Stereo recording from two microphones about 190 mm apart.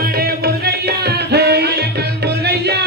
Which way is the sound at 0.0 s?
55° right (ahead or behind).